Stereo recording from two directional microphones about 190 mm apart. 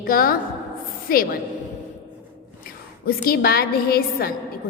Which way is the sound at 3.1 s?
55° left (ahead or behind).